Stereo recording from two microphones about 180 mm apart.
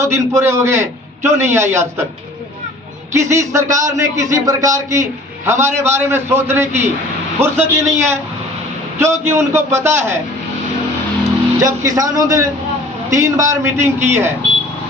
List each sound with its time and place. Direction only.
0.0 s a man's voice: 15° right (ahead or behind)
3.1 s a man's voice: 15° right (ahead or behind)
11.6 s a man's voice: 15° right (ahead or behind)